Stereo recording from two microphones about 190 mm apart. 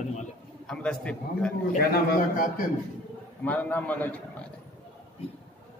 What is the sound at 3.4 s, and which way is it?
Speech, 10° left (ahead or behind).